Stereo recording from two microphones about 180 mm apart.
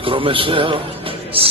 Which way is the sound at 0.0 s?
30° right (ahead or behind).